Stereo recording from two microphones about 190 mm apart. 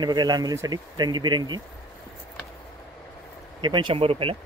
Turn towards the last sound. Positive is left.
turn(degrees=-30)  # may be behind; listen again after turning